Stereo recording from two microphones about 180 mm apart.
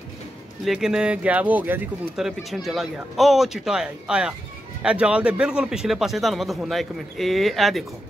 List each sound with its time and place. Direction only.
0.7 s speech: 5° right (ahead or behind)